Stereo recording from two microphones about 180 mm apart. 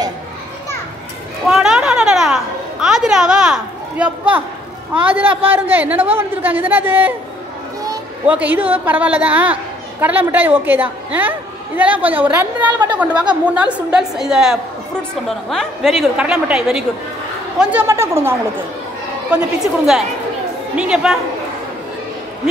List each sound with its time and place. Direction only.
1.5 s a sound: 5° right (ahead or behind)
5.4 s a woman's voice: 10° right (ahead or behind)
8.3 s a woman's voice: 10° right (ahead or behind)
19.3 s a woman's voice: centre (ahead or behind)